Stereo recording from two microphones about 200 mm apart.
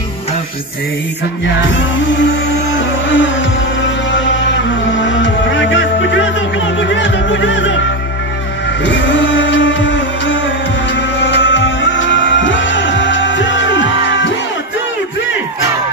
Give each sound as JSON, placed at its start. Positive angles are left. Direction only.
{"t": 1.7, "sound": "music", "side_deg": 65}
{"t": 8.8, "sound": "music", "side_deg": 65}